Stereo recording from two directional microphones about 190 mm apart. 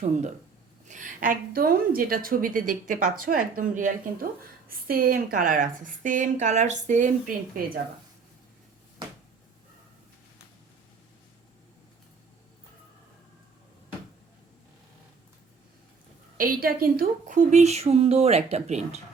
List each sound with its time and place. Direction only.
0.0 s a woman's voice: 40° right (ahead or behind)
16.4 s a woman's voice: 50° right (ahead or behind)